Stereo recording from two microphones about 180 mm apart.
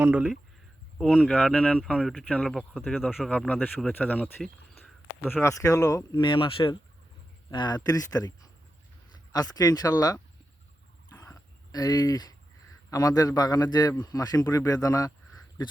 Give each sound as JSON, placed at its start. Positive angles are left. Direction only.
{"t": 0.0, "sound": "speech", "side_deg": -5}
{"t": 11.1, "sound": "a sound", "side_deg": 15}
{"t": 12.9, "sound": "speech", "side_deg": 20}